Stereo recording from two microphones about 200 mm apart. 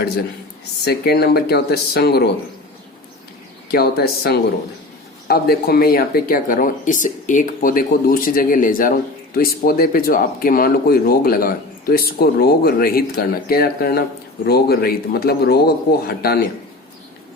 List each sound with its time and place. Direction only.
0.9 s speech: 55° left (ahead or behind)
3.7 s speech: 50° left (ahead or behind)